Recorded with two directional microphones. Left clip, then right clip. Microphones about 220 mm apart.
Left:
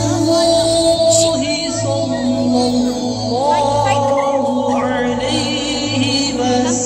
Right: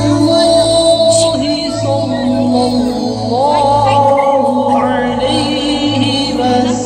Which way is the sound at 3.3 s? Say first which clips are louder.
Right 4 dB; 35° right (ahead or behind).